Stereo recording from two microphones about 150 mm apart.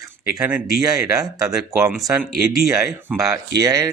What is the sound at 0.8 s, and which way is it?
Speech, 25° right (ahead or behind).